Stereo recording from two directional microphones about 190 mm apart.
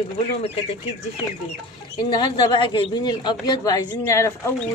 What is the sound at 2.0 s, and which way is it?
Speech, 20° left (ahead or behind).